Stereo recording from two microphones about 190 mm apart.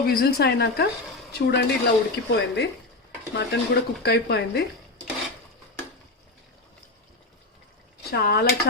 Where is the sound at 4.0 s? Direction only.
60° left (ahead or behind).